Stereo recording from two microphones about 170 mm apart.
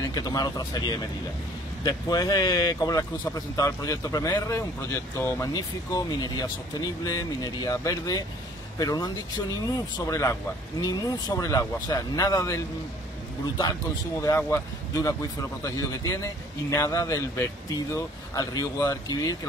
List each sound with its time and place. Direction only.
0.0 s a man's voice: 20° left (ahead or behind)
14.2 s a man's voice: 20° left (ahead or behind)